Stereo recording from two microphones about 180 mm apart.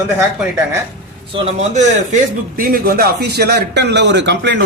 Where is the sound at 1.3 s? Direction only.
35° right (ahead or behind).